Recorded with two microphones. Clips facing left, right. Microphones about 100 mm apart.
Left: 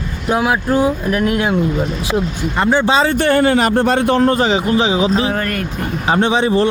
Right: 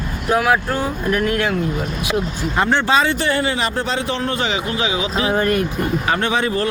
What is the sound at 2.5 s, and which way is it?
Speech, centre (ahead or behind).